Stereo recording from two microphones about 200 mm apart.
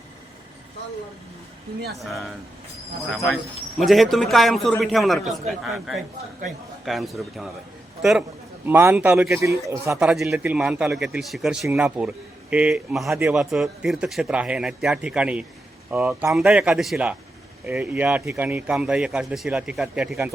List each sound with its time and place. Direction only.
2.0 s a man's voice: centre (ahead or behind)
8.6 s speech: 10° right (ahead or behind)
10.0 s a man's voice: centre (ahead or behind)